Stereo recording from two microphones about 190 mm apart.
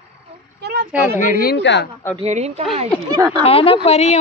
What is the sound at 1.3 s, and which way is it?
Speech, 55° left (ahead or behind).